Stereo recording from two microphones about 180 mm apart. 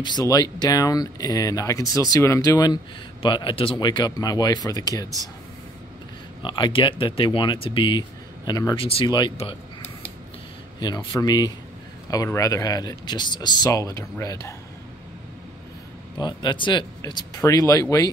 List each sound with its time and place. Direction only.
0.0 s speech: 20° left (ahead or behind)
6.4 s speech: 25° left (ahead or behind)
10.8 s speech: 25° left (ahead or behind)
16.2 s speech: 25° left (ahead or behind)